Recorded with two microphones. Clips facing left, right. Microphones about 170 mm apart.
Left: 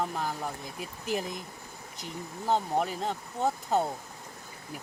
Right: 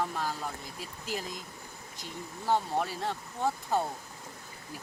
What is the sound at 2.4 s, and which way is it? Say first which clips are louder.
Speech: left 1 dB; 20° left (ahead or behind).